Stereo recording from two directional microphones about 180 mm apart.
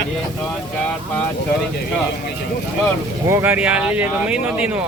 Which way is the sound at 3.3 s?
10° right (ahead or behind).